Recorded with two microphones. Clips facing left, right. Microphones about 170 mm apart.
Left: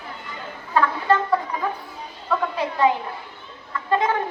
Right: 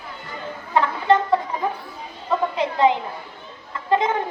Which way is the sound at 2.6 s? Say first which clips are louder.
Right 2 dB; 20° right (ahead or behind).